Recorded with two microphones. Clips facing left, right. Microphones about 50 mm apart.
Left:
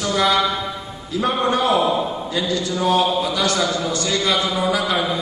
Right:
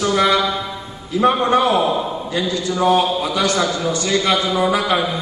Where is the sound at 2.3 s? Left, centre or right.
Right.